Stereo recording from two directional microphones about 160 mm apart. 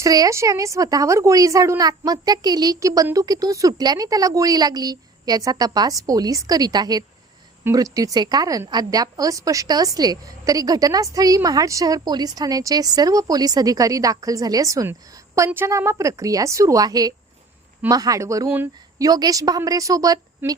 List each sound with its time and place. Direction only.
0.0 s a woman's voice: 20° right (ahead or behind)